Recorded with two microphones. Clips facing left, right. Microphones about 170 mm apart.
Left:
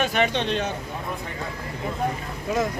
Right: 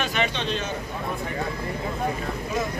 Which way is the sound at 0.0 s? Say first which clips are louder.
Left 3 dB; 55° left (ahead or behind).